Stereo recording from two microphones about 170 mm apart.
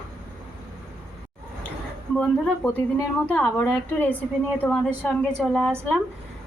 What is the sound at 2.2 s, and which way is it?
A woman's voice, 5° left (ahead or behind).